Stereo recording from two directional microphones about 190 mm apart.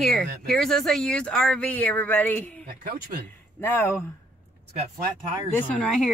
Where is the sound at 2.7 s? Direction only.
50° right (ahead or behind).